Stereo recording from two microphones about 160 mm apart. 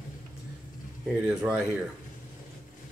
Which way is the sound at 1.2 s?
10° right (ahead or behind).